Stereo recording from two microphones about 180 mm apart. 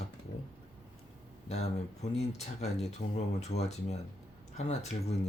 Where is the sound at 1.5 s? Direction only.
35° left (ahead or behind).